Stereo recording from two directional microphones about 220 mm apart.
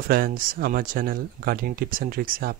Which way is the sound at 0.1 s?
40° right (ahead or behind).